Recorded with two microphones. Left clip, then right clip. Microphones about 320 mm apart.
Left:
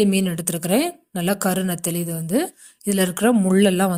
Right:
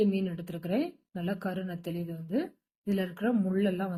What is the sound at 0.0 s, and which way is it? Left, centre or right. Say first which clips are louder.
A woman's voice: left 9 dB; left.